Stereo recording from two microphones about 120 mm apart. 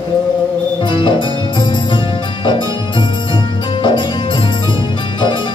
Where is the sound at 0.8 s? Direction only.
40° left (ahead or behind).